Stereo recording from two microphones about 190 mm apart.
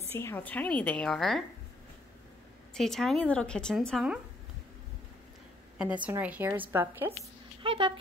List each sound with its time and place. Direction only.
0.1 s a woman's voice: 10° left (ahead or behind)
2.7 s a woman's voice: centre (ahead or behind)
6.0 s a woman's voice: 10° right (ahead or behind)
7.6 s speech: 30° right (ahead or behind)